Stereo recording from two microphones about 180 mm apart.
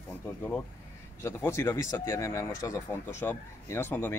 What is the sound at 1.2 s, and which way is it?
A man's voice, 15° left (ahead or behind).